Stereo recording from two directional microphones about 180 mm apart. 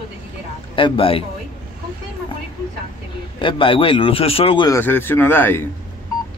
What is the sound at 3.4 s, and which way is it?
Speech, 30° left (ahead or behind).